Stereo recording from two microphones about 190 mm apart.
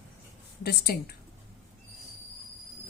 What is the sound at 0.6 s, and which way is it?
Speech, 55° left (ahead or behind).